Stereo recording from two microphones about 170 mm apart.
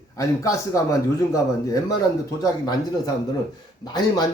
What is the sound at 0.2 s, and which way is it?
A man's voice, 20° left (ahead or behind).